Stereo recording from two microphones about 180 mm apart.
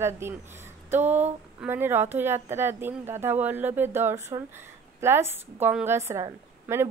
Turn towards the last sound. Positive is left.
turn(degrees=-15)  # may be behind; listen again after turning